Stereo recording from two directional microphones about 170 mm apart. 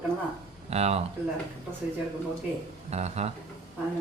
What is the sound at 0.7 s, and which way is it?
Speech, 40° right (ahead or behind).